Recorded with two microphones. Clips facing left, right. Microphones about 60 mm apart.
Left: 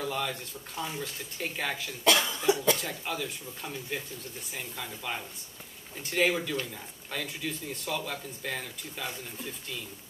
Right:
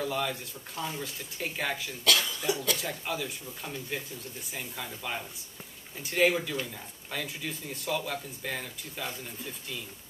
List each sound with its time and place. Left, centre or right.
0.0 s speech: centre
2.0 s speech: left
2.8 s speech: centre